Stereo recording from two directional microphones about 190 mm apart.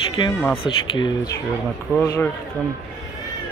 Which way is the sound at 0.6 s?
25° left (ahead or behind).